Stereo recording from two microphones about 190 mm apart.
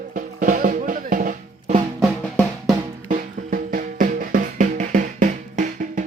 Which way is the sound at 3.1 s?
45° right (ahead or behind).